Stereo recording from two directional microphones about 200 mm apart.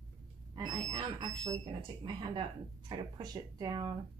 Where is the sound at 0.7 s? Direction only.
20° right (ahead or behind).